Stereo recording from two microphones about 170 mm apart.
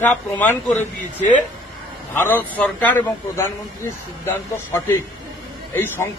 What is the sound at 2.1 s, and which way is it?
A man's voice, 10° left (ahead or behind).